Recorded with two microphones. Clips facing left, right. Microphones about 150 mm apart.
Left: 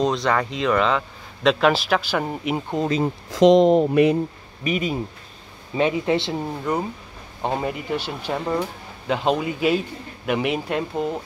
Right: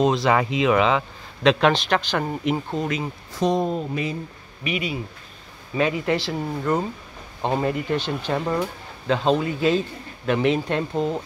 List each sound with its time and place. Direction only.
0.0 s speech: 5° right (ahead or behind)
2.5 s speech: 20° left (ahead or behind)
3.3 s speech: 90° left; by 4.2 s 65° left (ahead or behind)
4.6 s speech: 40° left (ahead or behind)
5.8 s speech: 25° left (ahead or behind)
6.7 s speech: 15° left (ahead or behind)